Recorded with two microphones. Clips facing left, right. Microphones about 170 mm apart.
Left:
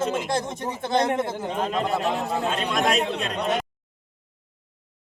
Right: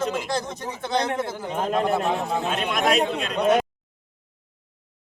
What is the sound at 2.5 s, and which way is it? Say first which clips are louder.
Speech: right 2 dB; centre (ahead or behind).